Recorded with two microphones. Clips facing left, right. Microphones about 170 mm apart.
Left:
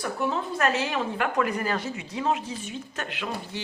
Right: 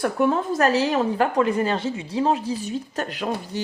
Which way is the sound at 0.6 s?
35° right (ahead or behind).